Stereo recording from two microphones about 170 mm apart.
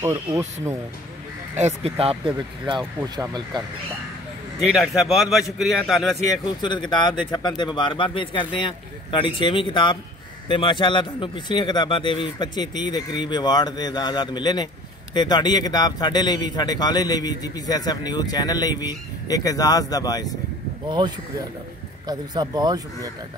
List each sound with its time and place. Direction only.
0.0 s speech: 15° right (ahead or behind)
1.6 s speech: 40° right (ahead or behind); by 3.6 s 20° right (ahead or behind)
4.7 s a man's voice: centre (ahead or behind)
6.6 s a man's voice: 25° left (ahead or behind)
22.0 s speech: 25° right (ahead or behind)